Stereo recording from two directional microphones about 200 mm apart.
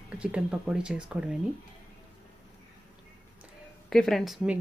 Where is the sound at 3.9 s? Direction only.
Centre (ahead or behind).